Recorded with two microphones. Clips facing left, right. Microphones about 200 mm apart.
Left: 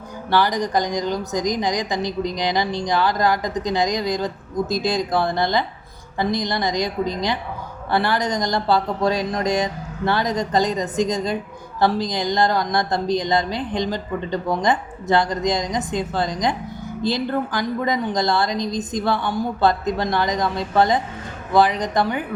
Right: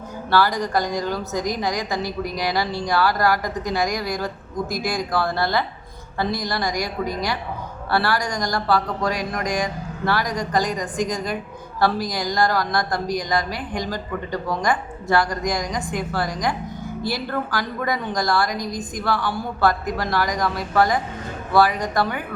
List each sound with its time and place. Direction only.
0.3 s a woman's voice: 20° left (ahead or behind)